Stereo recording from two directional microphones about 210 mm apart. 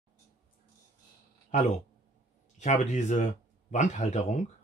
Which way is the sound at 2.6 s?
35° left (ahead or behind).